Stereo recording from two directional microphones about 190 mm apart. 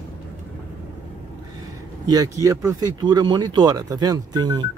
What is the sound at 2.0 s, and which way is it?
Speech, 20° right (ahead or behind).